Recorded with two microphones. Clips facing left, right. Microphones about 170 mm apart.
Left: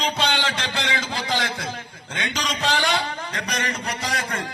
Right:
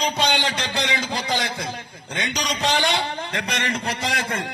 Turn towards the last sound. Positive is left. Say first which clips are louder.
# right 2 dB
turn(degrees=-30)  # may be behind; listen again after turning